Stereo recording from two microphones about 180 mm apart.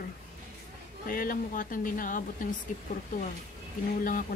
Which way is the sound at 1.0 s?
50° left (ahead or behind).